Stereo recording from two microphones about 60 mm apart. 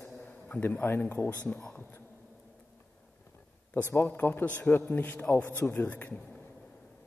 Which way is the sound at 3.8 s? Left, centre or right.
Left.